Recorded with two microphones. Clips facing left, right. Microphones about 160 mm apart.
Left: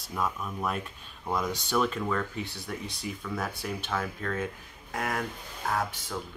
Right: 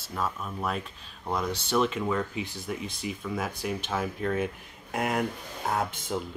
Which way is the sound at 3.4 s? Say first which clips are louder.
Right 3 dB; 15° right (ahead or behind).